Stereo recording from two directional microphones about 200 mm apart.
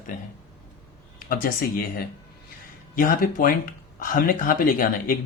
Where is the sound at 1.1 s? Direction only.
45° left (ahead or behind).